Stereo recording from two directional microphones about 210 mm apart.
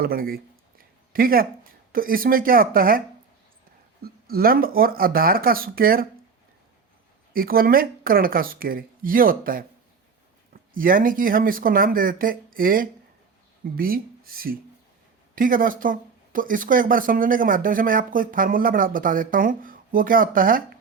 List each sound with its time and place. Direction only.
0.0 s speech: 45° right (ahead or behind)
4.0 s speech: 45° right (ahead or behind)
7.3 s speech: 45° right (ahead or behind)